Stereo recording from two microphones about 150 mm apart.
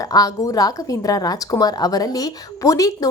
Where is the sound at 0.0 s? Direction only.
25° left (ahead or behind).